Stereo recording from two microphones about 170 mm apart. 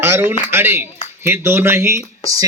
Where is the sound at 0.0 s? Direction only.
10° right (ahead or behind).